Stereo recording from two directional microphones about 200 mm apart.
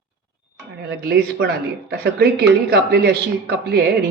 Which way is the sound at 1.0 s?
55° right (ahead or behind).